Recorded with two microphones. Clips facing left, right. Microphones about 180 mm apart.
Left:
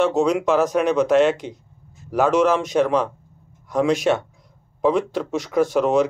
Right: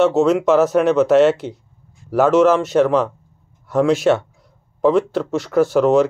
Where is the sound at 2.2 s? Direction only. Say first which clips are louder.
Right 4 dB; centre (ahead or behind).